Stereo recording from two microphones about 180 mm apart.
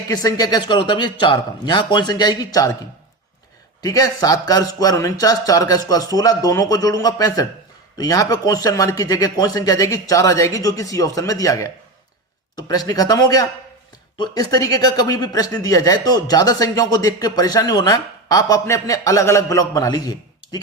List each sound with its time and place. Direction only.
0.1 s speech: 20° left (ahead or behind)
3.8 s speech: 20° left (ahead or behind)